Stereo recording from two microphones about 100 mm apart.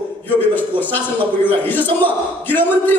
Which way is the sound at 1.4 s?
20° left (ahead or behind).